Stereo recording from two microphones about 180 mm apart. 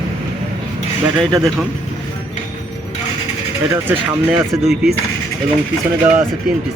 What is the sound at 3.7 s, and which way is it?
Speech, 10° right (ahead or behind).